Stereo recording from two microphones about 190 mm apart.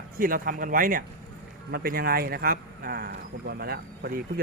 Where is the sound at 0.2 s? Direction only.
50° right (ahead or behind).